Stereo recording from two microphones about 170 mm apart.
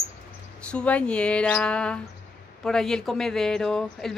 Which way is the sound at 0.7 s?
5° left (ahead or behind).